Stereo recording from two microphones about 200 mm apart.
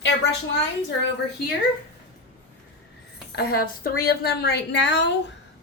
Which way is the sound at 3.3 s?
50° left (ahead or behind).